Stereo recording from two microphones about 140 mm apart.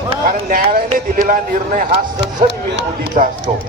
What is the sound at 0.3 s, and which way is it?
Speech, 90° right.